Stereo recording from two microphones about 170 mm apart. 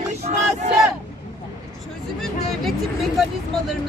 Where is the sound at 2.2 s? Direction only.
Centre (ahead or behind).